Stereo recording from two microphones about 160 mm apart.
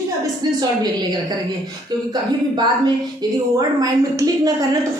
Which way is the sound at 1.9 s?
25° right (ahead or behind).